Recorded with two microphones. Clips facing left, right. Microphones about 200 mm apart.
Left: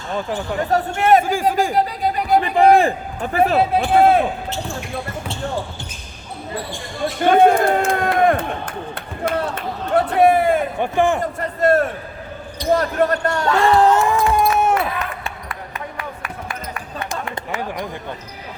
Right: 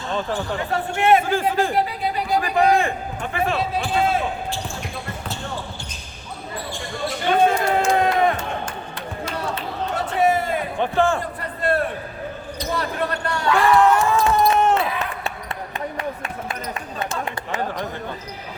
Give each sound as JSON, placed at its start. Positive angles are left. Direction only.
{"t": 0.7, "sound": "a man's voice", "side_deg": 40}
{"t": 1.2, "sound": "a man's voice", "side_deg": 10}
{"t": 1.7, "sound": "a sound", "side_deg": 45}
{"t": 2.4, "sound": "a sound", "side_deg": 30}
{"t": 3.3, "sound": "a man's voice", "side_deg": 40}
{"t": 3.6, "sound": "a man's voice", "side_deg": 55}
{"t": 7.3, "sound": "crowd", "side_deg": 55}
{"t": 10.8, "sound": "a man's voice", "side_deg": 15}
{"t": 11.2, "sound": "speech", "side_deg": 45}
{"t": 13.6, "sound": "speech", "side_deg": 30}
{"t": 14.0, "sound": "a sound", "side_deg": 15}
{"t": 14.6, "sound": "basketball bounce", "side_deg": 10}
{"t": 16.0, "sound": "basketball bounce", "side_deg": -25}